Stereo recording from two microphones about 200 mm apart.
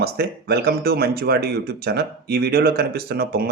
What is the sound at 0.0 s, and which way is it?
Speech, 50° right (ahead or behind).